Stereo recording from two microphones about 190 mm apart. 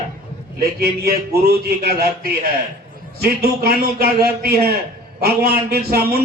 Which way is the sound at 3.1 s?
55° right (ahead or behind).